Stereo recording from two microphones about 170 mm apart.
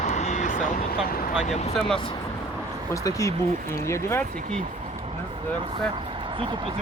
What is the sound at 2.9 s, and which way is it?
Speech, 20° left (ahead or behind).